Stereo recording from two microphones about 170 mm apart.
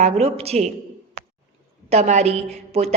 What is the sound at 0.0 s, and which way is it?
Speech, 40° right (ahead or behind).